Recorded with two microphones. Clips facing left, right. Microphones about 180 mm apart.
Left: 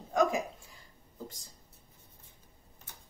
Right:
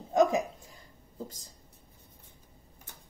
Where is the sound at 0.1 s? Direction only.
25° right (ahead or behind).